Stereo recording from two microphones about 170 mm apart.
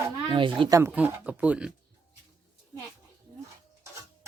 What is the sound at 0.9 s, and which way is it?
Speech, 10° right (ahead or behind).